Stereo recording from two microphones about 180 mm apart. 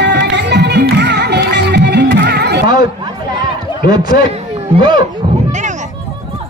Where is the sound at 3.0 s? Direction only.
25° right (ahead or behind).